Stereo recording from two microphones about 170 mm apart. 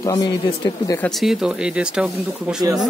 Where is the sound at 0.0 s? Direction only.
20° left (ahead or behind).